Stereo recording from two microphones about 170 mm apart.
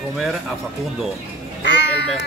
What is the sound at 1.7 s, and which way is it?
Crow, 90° left.